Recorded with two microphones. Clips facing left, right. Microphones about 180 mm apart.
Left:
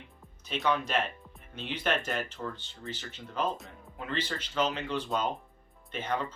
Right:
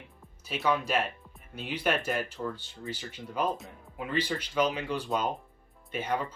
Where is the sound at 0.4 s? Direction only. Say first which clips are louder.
Right 1 dB; 5° right (ahead or behind).